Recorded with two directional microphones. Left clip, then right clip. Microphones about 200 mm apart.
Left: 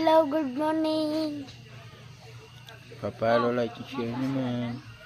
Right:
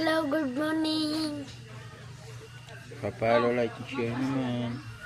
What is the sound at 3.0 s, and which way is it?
Speech, 20° left (ahead or behind).